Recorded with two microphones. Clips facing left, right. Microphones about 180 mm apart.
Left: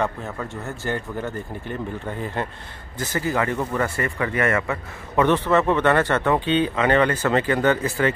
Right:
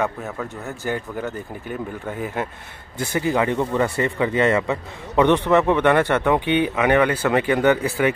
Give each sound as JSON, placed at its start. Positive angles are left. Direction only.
{"t": 0.0, "sound": "speech", "side_deg": -5}